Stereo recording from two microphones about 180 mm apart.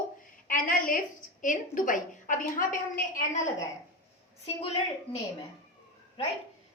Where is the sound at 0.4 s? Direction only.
50° left (ahead or behind).